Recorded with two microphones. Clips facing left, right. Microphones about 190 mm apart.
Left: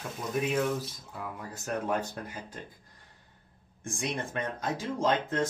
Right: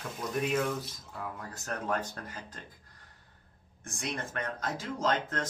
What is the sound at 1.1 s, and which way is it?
Speech, 5° left (ahead or behind).